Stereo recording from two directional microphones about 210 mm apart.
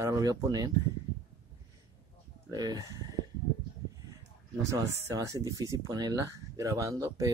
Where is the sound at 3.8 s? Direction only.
15° right (ahead or behind).